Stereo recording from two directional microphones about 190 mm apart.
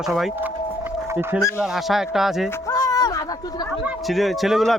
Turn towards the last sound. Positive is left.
turn(degrees=0)  # may be behind; listen again after turning